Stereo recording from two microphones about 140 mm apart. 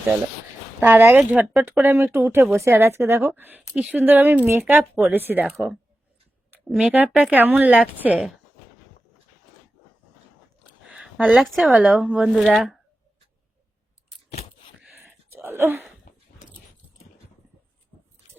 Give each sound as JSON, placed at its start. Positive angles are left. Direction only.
{"t": 0.8, "sound": "speech", "side_deg": -15}
{"t": 10.9, "sound": "speech", "side_deg": -5}
{"t": 14.8, "sound": "a sound", "side_deg": -10}